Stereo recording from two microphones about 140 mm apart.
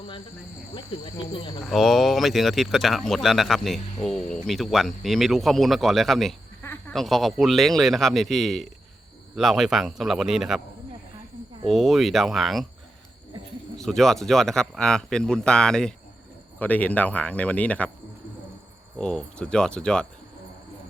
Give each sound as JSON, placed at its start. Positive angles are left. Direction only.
{"t": 0.7, "sound": "speech", "side_deg": 35}
{"t": 1.6, "sound": "speech", "side_deg": 0}
{"t": 6.6, "sound": "a sound", "side_deg": 15}
{"t": 6.9, "sound": "speech", "side_deg": 0}
{"t": 11.7, "sound": "speech", "side_deg": 0}
{"t": 13.7, "sound": "speech", "side_deg": 5}
{"t": 18.9, "sound": "speech", "side_deg": 5}